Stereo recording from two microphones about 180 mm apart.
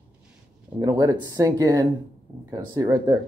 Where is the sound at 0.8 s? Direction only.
20° right (ahead or behind).